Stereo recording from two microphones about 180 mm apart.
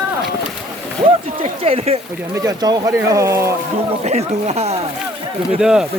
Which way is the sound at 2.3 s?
20° right (ahead or behind).